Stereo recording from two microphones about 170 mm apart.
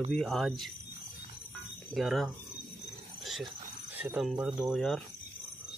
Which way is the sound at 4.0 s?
5° right (ahead or behind).